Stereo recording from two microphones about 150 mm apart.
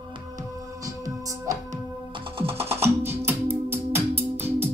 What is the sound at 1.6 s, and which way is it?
Music, 35° right (ahead or behind).